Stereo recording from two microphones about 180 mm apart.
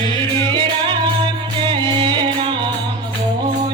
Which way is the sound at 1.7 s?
25° right (ahead or behind).